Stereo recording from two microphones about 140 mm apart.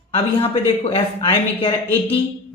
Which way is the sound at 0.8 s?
40° left (ahead or behind).